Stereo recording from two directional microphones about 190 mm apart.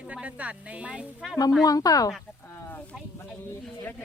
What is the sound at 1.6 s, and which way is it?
Speech, 20° left (ahead or behind).